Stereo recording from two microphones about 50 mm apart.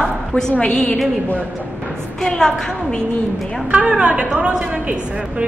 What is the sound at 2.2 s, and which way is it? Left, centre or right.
Speech, centre.